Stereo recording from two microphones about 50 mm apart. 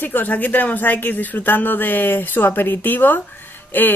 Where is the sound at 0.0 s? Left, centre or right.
Left.